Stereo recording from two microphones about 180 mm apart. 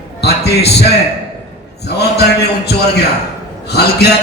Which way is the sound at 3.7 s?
65° left (ahead or behind).